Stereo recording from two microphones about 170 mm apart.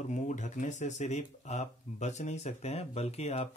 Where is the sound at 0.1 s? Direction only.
45° left (ahead or behind).